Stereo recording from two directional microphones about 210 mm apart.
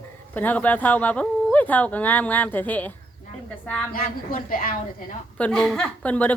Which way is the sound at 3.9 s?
45° left (ahead or behind).